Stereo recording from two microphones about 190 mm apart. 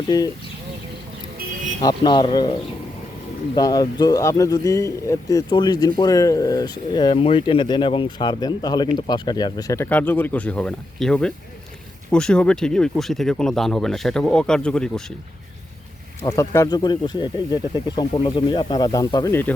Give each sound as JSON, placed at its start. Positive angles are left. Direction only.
{"t": 0.1, "sound": "speech", "side_deg": 20}
{"t": 1.8, "sound": "speech", "side_deg": 25}
{"t": 16.2, "sound": "speech", "side_deg": 15}